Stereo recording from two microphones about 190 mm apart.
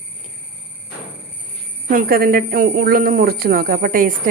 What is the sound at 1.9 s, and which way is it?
A woman's voice, 50° right (ahead or behind).